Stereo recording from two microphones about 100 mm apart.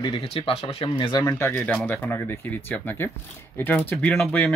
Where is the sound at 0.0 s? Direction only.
65° left (ahead or behind).